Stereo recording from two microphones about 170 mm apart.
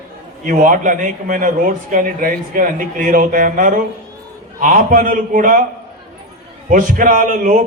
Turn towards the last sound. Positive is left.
turn(degrees=-50)  # may be behind; listen again after turning